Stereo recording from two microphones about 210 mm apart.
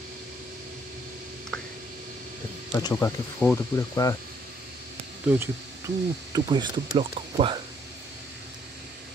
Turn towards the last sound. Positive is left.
turn(degrees=-25)  # may be behind; listen again after turning